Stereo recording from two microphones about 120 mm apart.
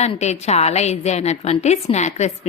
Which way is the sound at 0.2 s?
65° left (ahead or behind).